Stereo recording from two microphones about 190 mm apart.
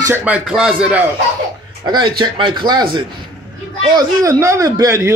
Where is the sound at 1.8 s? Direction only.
20° right (ahead or behind).